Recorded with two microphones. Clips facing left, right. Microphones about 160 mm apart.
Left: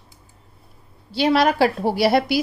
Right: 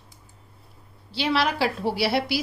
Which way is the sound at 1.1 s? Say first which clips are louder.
Left 7 dB; 45° left (ahead or behind).